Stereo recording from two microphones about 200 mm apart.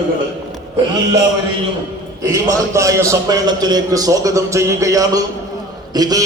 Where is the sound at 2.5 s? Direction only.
15° right (ahead or behind).